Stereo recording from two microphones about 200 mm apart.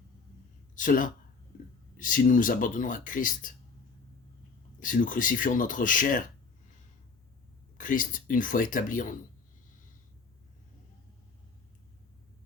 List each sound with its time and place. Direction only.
0.8 s speech: 40° left (ahead or behind)
4.8 s speech: 40° left (ahead or behind)
7.8 s speech: 40° left (ahead or behind)